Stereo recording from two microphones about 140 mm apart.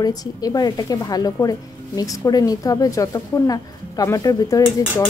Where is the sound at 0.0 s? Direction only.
25° left (ahead or behind).